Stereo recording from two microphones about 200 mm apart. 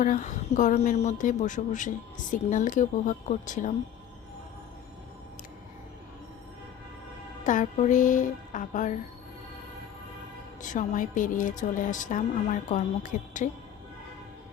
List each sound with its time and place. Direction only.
0.0 s speech: 40° left (ahead or behind)
7.4 s speech: 40° left (ahead or behind)
10.6 s speech: 40° left (ahead or behind)